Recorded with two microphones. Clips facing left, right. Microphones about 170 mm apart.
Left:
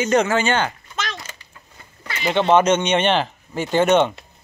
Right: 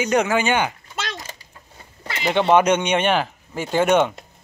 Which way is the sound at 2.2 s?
15° right (ahead or behind).